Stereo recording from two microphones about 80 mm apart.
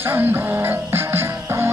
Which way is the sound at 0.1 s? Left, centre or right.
Right.